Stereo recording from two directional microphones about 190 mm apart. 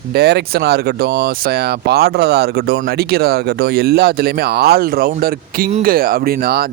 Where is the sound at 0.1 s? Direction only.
60° right (ahead or behind).